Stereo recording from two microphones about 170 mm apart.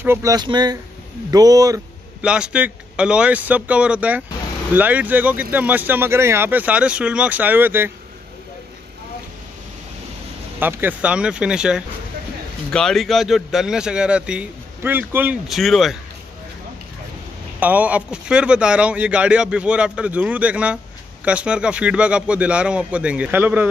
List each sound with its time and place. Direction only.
0.0 s speech: 15° right (ahead or behind)
2.2 s speech: 5° right (ahead or behind)
10.6 s speech: 10° right (ahead or behind)
15.4 s speech: centre (ahead or behind)
17.6 s speech: 10° right (ahead or behind)